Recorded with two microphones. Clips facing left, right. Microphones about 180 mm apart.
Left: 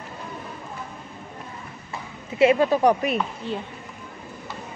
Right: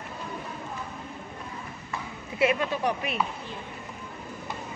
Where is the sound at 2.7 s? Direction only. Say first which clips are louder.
Left 9 dB; 40° left (ahead or behind).